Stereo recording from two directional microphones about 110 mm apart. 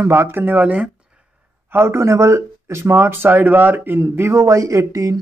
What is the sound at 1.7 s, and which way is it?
Speech, 25° right (ahead or behind).